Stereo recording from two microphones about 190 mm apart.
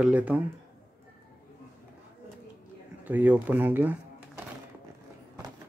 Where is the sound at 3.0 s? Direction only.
10° right (ahead or behind).